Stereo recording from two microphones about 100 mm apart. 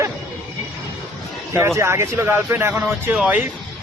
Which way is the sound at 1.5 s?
25° right (ahead or behind).